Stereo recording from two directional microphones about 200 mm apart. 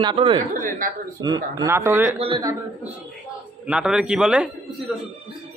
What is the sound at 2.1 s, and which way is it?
Speech, 25° right (ahead or behind).